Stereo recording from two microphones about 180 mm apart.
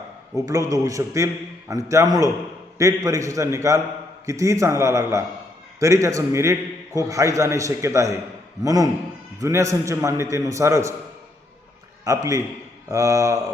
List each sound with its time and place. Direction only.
0.4 s a man's voice: 20° right (ahead or behind)
12.0 s a man's voice: 20° right (ahead or behind)